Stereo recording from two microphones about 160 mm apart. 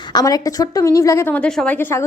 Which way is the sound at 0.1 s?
25° left (ahead or behind).